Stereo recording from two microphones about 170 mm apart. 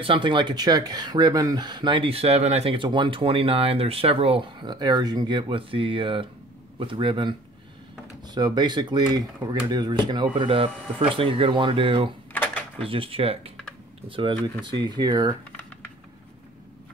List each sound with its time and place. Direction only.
0.0 s speech: 30° right (ahead or behind)
8.4 s speech: 25° right (ahead or behind)